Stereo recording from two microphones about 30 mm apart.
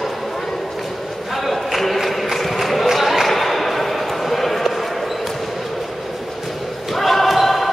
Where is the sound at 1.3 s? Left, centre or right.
Centre.